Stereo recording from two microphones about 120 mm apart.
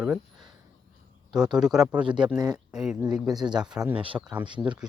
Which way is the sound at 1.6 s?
5° right (ahead or behind).